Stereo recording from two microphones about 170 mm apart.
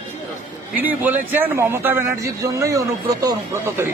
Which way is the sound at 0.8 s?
10° right (ahead or behind).